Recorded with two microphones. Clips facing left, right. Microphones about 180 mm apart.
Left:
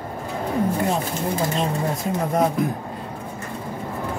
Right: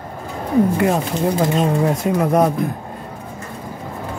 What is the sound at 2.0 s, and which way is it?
Speech, 80° right.